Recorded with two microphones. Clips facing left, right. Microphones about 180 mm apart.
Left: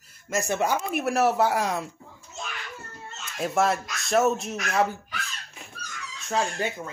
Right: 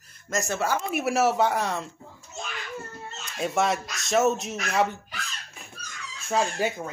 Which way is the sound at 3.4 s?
Centre (ahead or behind).